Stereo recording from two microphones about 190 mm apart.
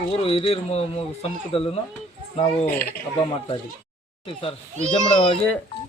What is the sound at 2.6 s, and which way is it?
Speech, 55° left (ahead or behind).